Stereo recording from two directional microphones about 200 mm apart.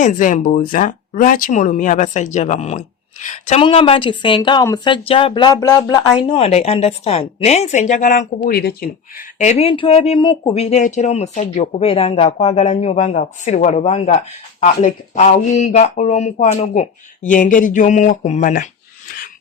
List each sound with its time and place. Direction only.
0.0 s speech: 40° left (ahead or behind)